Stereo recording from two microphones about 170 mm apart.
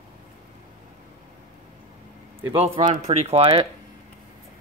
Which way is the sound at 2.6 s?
35° right (ahead or behind).